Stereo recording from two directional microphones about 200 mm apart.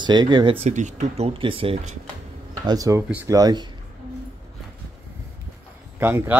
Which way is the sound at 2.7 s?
15° right (ahead or behind).